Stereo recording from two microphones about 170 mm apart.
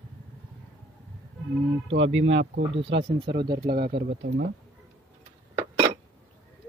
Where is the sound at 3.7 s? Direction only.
75° right (ahead or behind).